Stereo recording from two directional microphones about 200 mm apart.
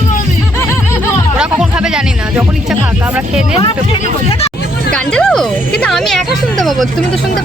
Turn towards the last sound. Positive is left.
turn(degrees=0)  # may be behind; listen again after turning